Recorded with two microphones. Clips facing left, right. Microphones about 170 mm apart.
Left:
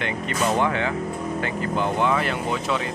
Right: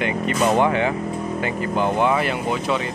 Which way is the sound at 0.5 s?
15° right (ahead or behind).